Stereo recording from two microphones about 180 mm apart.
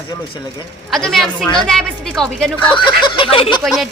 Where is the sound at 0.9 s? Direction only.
Centre (ahead or behind).